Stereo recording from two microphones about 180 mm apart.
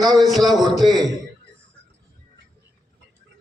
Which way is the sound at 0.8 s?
20° right (ahead or behind).